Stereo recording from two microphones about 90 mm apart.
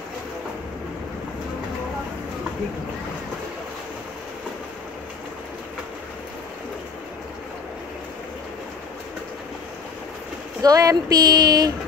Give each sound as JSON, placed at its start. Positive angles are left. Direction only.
{"t": 10.6, "sound": "speech", "side_deg": -40}